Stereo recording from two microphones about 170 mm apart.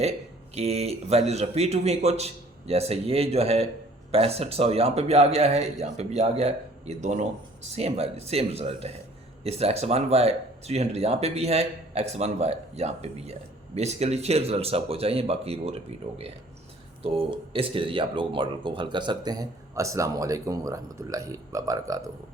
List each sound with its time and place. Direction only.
0.5 s speech: 35° right (ahead or behind); by 22.1 s 20° right (ahead or behind)